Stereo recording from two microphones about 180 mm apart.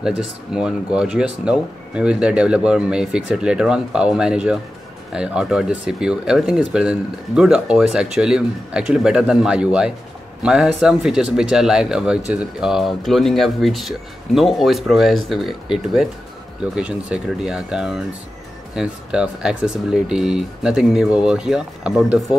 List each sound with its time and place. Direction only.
0.0 s speech: 5° right (ahead or behind)